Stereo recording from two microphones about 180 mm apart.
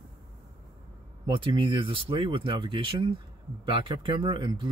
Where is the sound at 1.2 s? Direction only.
25° right (ahead or behind).